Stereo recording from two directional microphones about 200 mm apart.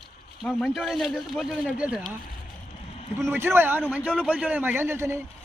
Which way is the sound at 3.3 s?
10° right (ahead or behind).